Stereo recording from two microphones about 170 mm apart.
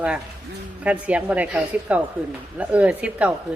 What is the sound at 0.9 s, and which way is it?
A woman's voice, 10° right (ahead or behind).